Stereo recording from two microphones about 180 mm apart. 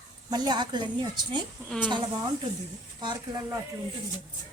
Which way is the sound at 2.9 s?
25° right (ahead or behind).